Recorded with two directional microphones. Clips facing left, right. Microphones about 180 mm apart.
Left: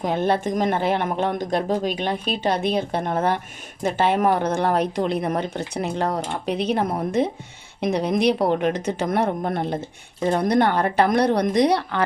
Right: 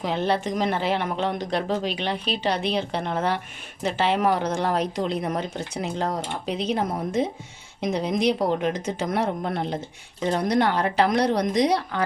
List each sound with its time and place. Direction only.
0.0 s a woman's voice: 50° left (ahead or behind)